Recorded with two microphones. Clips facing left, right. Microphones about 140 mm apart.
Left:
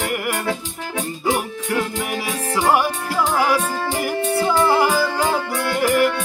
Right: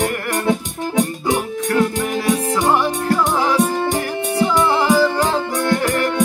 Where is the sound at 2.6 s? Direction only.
10° left (ahead or behind).